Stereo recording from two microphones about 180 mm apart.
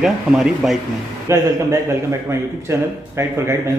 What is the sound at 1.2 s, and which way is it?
A man's voice, 15° right (ahead or behind).